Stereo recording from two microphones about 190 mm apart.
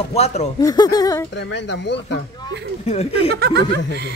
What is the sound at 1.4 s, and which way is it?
Speech, 70° left (ahead or behind).